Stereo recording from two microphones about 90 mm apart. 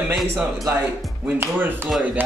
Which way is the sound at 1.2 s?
20° right (ahead or behind).